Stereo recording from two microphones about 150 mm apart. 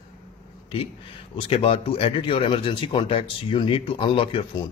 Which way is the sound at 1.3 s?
40° left (ahead or behind).